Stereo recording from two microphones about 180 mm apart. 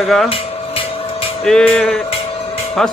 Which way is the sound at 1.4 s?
5° left (ahead or behind).